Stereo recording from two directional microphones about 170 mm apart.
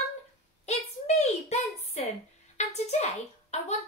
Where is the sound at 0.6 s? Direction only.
40° left (ahead or behind).